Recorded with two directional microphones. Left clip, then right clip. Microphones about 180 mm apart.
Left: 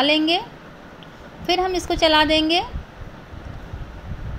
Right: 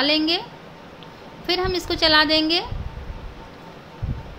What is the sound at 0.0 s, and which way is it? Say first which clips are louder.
Speech: left 2 dB; 10° left (ahead or behind).